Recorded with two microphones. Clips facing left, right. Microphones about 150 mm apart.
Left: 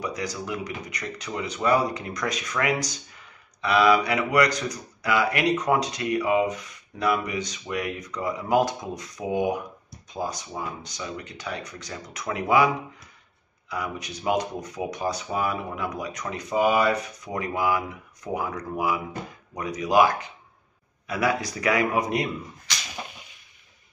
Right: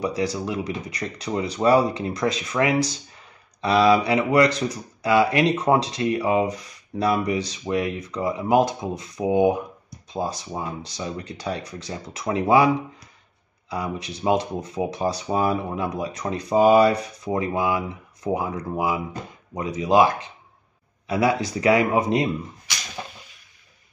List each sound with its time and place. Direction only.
0.0 s speech: 30° right (ahead or behind)
13.7 s speech: 30° right (ahead or behind)